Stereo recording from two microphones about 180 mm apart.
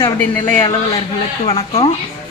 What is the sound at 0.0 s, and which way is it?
Speech, 10° left (ahead or behind).